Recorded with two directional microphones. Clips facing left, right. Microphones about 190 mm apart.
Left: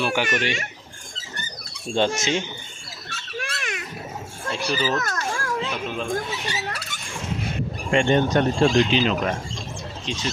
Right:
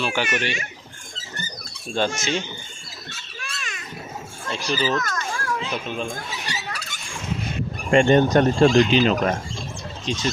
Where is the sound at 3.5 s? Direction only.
65° left (ahead or behind).